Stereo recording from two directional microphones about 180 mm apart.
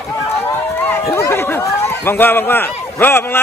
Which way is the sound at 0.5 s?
10° left (ahead or behind).